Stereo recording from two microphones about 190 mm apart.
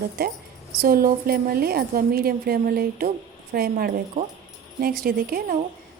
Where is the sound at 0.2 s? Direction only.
50° right (ahead or behind).